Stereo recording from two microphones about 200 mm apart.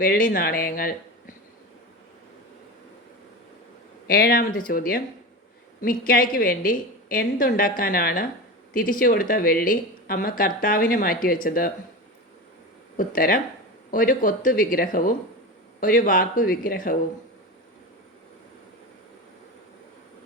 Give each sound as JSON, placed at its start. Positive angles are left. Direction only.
{"t": 0.0, "sound": "speech", "side_deg": 45}
{"t": 4.0, "sound": "speech", "side_deg": 50}
{"t": 13.0, "sound": "speech", "side_deg": 45}